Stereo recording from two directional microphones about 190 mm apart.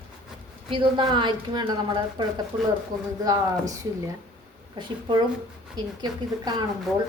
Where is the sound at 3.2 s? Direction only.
20° right (ahead or behind).